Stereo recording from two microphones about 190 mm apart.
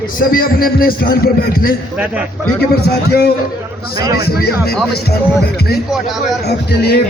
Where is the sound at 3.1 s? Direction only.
55° left (ahead or behind).